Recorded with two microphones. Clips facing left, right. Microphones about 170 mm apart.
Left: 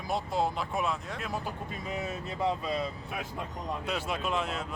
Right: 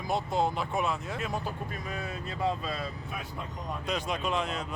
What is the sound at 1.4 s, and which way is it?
Speech, 20° left (ahead or behind).